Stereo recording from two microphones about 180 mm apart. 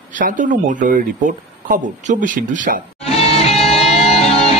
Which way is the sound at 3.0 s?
35° left (ahead or behind).